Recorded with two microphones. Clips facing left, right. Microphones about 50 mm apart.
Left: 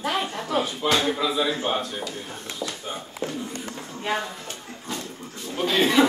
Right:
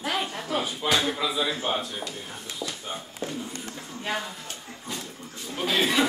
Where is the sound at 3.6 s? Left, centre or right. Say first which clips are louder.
Left 3 dB; centre.